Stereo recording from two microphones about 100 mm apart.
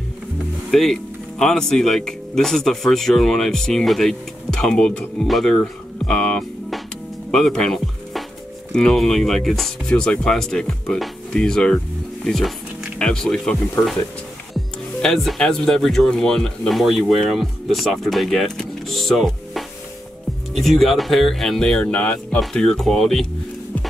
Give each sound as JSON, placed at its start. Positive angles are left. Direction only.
{"t": 0.7, "sound": "speech", "side_deg": 5}
{"t": 7.2, "sound": "music", "side_deg": 5}
{"t": 8.7, "sound": "speech", "side_deg": 5}
{"t": 13.8, "sound": "speech", "side_deg": 25}
{"t": 14.5, "sound": "speech", "side_deg": 5}